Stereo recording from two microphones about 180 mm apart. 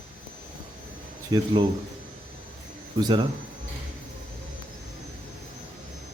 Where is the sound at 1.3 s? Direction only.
20° right (ahead or behind).